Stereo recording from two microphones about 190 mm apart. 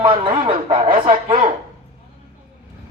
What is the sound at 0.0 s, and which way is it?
Speech, 25° right (ahead or behind).